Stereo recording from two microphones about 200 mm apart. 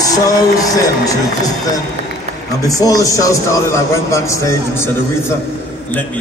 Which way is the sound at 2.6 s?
15° left (ahead or behind).